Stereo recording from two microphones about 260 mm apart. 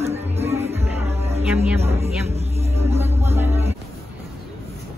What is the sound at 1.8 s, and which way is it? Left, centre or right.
Speech, right.